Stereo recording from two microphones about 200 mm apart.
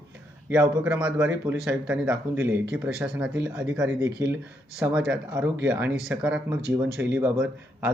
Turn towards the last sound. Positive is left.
turn(degrees=-10)  # may be behind; listen again after turning